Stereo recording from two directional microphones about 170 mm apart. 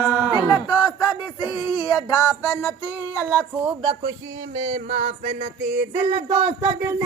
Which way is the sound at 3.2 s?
15° right (ahead or behind).